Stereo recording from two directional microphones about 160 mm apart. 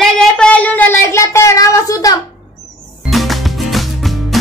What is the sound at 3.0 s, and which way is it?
Music, centre (ahead or behind).